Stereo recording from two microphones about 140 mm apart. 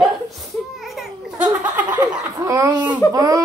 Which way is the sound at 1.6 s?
10° right (ahead or behind).